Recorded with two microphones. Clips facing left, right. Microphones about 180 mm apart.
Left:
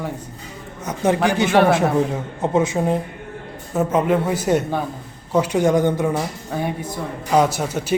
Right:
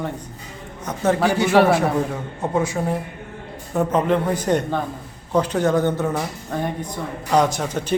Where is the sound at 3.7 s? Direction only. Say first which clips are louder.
Left 1 dB; 5° left (ahead or behind).